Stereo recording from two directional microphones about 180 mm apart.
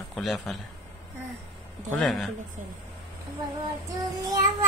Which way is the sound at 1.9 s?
Centre (ahead or behind).